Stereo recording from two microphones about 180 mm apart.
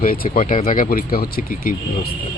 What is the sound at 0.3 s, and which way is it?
Speech, 45° left (ahead or behind).